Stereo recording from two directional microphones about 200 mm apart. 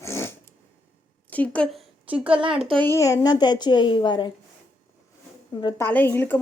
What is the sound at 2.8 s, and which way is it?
A woman's voice, 15° left (ahead or behind).